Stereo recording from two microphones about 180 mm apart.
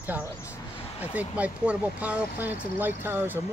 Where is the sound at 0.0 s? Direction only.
10° right (ahead or behind).